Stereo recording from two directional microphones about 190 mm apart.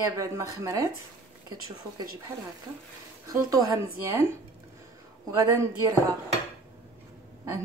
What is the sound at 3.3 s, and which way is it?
Speech, 20° right (ahead or behind).